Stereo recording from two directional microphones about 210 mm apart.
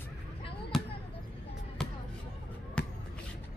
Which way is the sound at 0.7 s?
Centre (ahead or behind).